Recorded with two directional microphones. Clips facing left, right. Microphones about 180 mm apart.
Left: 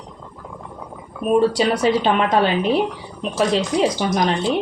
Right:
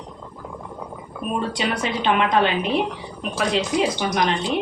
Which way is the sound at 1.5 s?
40° left (ahead or behind).